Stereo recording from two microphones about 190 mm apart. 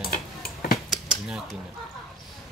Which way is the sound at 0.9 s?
5° right (ahead or behind).